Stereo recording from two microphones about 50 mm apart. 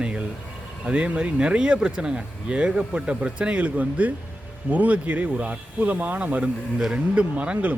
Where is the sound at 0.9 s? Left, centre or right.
Right.